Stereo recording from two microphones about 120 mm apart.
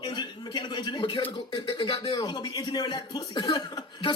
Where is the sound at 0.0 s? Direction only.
40° left (ahead or behind).